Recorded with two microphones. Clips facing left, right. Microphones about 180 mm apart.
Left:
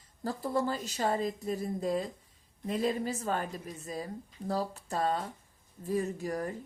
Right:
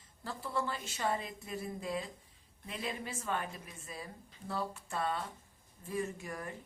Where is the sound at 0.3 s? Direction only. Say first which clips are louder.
Left 6 dB; 40° left (ahead or behind).